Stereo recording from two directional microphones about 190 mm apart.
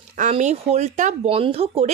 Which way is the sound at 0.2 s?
40° right (ahead or behind).